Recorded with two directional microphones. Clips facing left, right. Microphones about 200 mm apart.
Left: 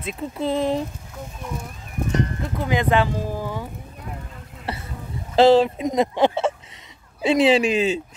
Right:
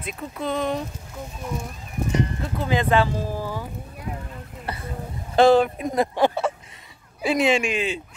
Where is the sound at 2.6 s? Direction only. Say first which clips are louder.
Even; 15° left (ahead or behind).